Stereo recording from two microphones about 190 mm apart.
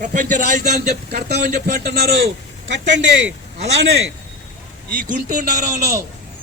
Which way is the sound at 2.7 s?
70° right (ahead or behind).